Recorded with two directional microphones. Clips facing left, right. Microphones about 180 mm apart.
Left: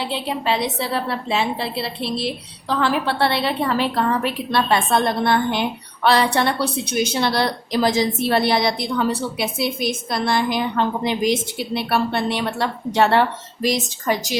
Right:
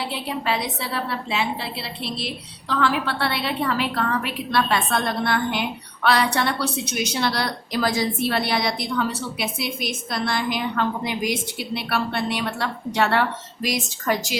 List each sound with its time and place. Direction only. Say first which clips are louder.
0.1 s a woman's voice: left 3 dB; 25° left (ahead or behind)
2.6 s a woman's voice: left 2 dB; 35° left (ahead or behind)
10.1 s a woman's voice: left 3 dB; 25° left (ahead or behind)